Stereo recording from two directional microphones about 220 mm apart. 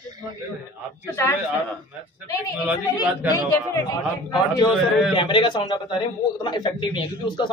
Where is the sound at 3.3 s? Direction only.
15° left (ahead or behind).